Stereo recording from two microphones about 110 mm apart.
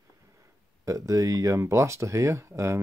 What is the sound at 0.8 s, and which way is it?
Speech, 30° right (ahead or behind).